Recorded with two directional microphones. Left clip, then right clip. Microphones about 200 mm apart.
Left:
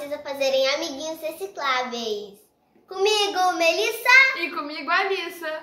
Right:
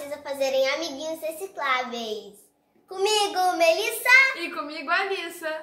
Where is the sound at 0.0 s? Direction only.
10° right (ahead or behind).